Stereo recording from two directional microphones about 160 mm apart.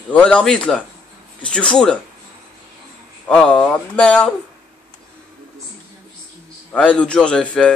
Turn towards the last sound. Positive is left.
turn(degrees=5)  # may be behind; listen again after turning